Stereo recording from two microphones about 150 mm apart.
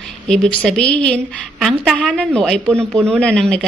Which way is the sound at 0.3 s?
5° left (ahead or behind).